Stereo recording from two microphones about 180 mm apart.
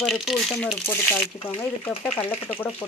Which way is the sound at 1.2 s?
10° left (ahead or behind).